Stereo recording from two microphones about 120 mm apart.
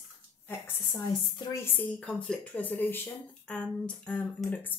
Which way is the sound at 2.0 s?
5° left (ahead or behind).